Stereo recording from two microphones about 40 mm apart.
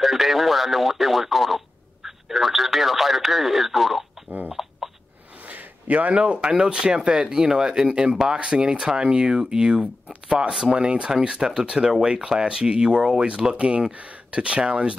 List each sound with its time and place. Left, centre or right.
0.0 s speech: centre
4.5 s cough: centre
5.5 s speech: right